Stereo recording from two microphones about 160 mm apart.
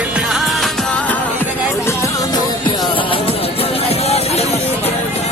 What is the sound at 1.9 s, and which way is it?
Music, 20° left (ahead or behind).